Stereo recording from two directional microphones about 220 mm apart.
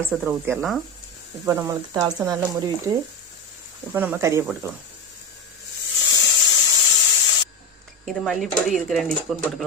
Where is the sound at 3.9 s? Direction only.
10° right (ahead or behind).